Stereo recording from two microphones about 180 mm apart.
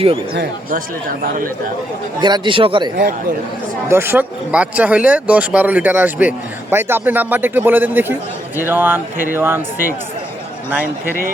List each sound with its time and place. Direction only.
2.2 s speech: 25° right (ahead or behind)
3.8 s speech: 15° right (ahead or behind)